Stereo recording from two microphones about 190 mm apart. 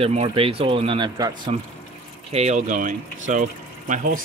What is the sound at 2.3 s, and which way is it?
Speech, 35° right (ahead or behind).